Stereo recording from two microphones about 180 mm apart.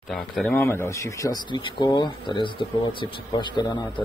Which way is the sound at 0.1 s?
Centre (ahead or behind).